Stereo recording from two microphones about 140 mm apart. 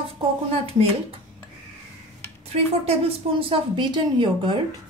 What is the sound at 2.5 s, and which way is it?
A woman's voice, 45° right (ahead or behind).